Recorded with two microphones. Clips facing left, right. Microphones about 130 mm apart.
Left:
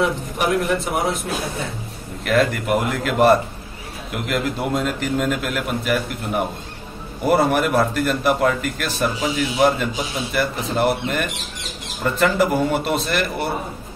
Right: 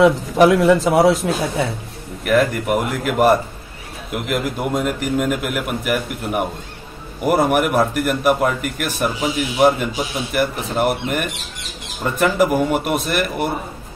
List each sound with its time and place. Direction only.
0.4 s speech: 90° right
2.2 s a man's voice: 15° right (ahead or behind)